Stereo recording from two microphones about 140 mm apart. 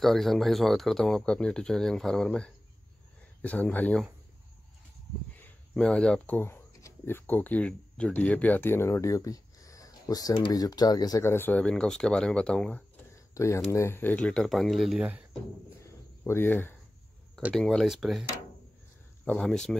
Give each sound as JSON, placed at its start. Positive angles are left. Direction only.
{"t": 0.0, "sound": "speech", "side_deg": 0}
{"t": 5.4, "sound": "speech", "side_deg": 10}
{"t": 13.3, "sound": "speech", "side_deg": 20}
{"t": 15.8, "sound": "cricket", "side_deg": 15}
{"t": 17.6, "sound": "speech", "side_deg": 0}
{"t": 19.2, "sound": "speech", "side_deg": 5}